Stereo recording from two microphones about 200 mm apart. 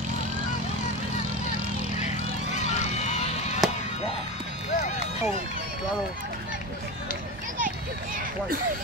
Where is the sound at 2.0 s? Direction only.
35° left (ahead or behind).